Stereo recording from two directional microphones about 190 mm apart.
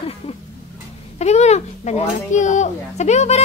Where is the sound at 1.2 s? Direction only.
35° left (ahead or behind).